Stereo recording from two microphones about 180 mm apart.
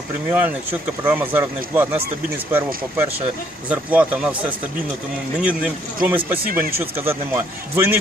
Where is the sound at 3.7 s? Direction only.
10° right (ahead or behind).